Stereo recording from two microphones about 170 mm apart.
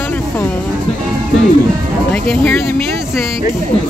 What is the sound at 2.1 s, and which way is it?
Speech, 10° left (ahead or behind).